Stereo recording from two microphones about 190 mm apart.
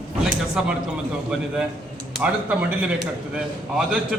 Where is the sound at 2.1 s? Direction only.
5° right (ahead or behind).